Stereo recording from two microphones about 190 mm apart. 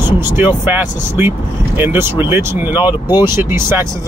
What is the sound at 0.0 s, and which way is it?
Speech, 10° right (ahead or behind).